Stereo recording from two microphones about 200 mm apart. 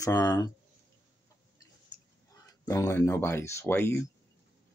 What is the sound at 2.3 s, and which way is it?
Speech, 15° left (ahead or behind).